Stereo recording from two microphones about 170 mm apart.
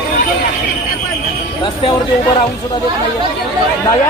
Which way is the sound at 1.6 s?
30° left (ahead or behind).